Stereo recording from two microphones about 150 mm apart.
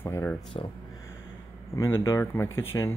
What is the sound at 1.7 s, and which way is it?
Speech, 20° left (ahead or behind).